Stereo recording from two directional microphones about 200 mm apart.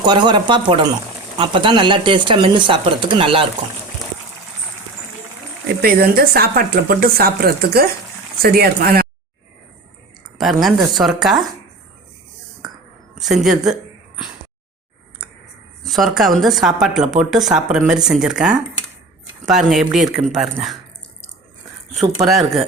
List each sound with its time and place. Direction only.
0.0 s speech: 20° right (ahead or behind)
5.6 s speech: 50° right (ahead or behind)
10.3 s a woman's voice: centre (ahead or behind)
13.1 s a woman's voice: centre (ahead or behind)
15.8 s a woman's voice: centre (ahead or behind)
22.2 s a woman's voice: centre (ahead or behind)